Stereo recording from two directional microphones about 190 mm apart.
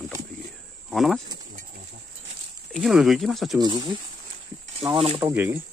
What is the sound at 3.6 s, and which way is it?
Speech, 25° right (ahead or behind).